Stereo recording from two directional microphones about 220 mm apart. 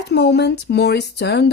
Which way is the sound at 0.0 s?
50° left (ahead or behind).